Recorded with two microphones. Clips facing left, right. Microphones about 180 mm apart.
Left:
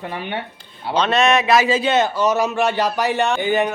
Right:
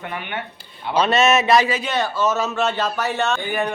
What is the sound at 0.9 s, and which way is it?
Speech, centre (ahead or behind).